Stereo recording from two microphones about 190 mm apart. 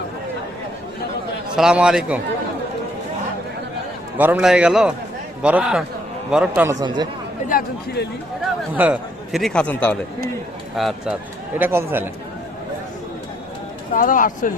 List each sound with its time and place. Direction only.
1.5 s speech: 5° right (ahead or behind)
4.2 s speech: 5° right (ahead or behind)
6.6 s speech: 20° right (ahead or behind)
7.4 s speech: 50° left (ahead or behind)
8.7 s speech: 5° right (ahead or behind)
13.9 s speech: 45° left (ahead or behind)